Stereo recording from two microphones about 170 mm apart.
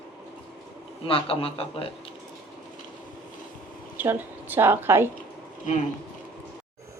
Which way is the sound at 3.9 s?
10° right (ahead or behind).